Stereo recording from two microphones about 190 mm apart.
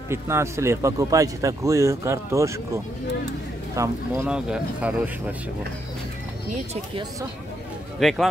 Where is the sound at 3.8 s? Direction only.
10° right (ahead or behind).